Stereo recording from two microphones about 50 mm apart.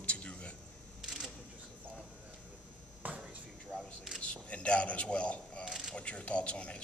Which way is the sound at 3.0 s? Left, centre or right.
Right.